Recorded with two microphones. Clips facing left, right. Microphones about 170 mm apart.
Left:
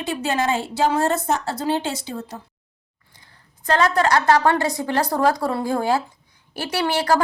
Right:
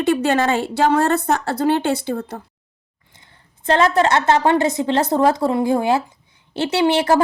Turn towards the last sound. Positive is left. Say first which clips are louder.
# right 4 dB
turn(degrees=-20)  # may be behind; listen again after turning